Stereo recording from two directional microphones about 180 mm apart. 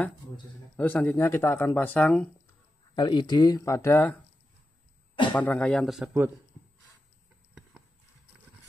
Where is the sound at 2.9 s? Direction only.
25° left (ahead or behind).